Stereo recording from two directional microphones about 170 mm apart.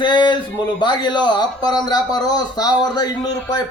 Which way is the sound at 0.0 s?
25° left (ahead or behind).